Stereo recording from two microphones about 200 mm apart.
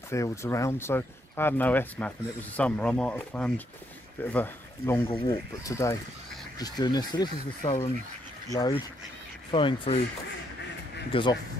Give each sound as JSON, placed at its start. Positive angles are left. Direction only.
{"t": 0.1, "sound": "speech", "side_deg": 15}
{"t": 5.0, "sound": "speech", "side_deg": 25}
{"t": 5.6, "sound": "speech", "side_deg": 15}
{"t": 11.1, "sound": "speech", "side_deg": 25}